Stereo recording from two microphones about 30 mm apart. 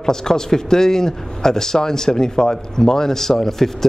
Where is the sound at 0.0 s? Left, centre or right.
Centre.